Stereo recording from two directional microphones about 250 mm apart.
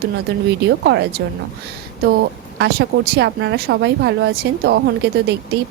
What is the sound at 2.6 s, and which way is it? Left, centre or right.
A woman's voice, right.